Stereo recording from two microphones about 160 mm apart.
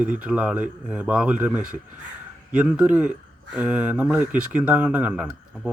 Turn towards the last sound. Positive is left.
turn(degrees=-5)  # may be behind; listen again after turning